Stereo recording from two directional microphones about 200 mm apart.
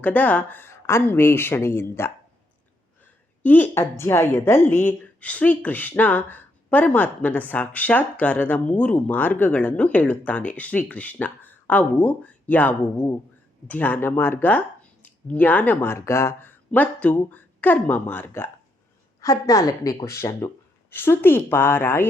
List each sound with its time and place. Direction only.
0.0 s a woman's voice: 10° left (ahead or behind)
3.4 s a woman's voice: 10° left (ahead or behind)